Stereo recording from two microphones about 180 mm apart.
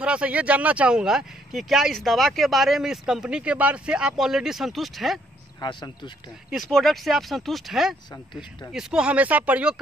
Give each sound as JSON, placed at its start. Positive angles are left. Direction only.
{"t": 0.0, "sound": "speech", "side_deg": -5}
{"t": 5.6, "sound": "speech", "side_deg": 25}
{"t": 6.7, "sound": "speech", "side_deg": 0}